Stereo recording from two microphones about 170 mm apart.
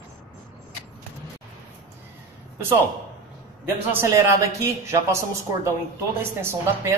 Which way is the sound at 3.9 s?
15° right (ahead or behind).